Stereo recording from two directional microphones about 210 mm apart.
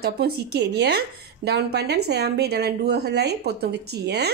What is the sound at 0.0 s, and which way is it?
Speech, 50° right (ahead or behind).